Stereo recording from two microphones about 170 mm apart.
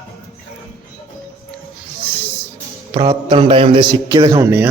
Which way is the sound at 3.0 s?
30° right (ahead or behind).